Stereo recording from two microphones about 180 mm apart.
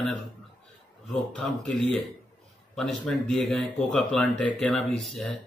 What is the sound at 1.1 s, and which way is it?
Speech, 5° left (ahead or behind).